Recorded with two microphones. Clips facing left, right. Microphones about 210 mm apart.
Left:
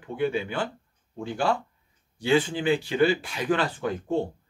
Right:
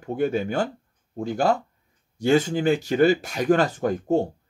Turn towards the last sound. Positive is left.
turn(degrees=-45)  # may be behind; listen again after turning